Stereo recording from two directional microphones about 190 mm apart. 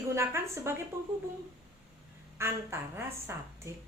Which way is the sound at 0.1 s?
15° right (ahead or behind).